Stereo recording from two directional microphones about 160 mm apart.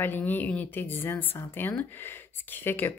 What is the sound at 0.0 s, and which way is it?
A woman's voice, 10° left (ahead or behind).